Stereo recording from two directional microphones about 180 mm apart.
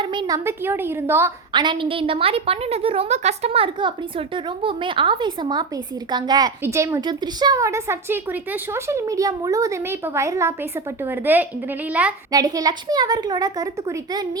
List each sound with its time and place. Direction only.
0.0 s a woman's voice: 25° right (ahead or behind)
1.5 s a woman's voice: 25° right (ahead or behind); by 12.1 s 10° right (ahead or behind)
12.3 s a woman's voice: 20° right (ahead or behind)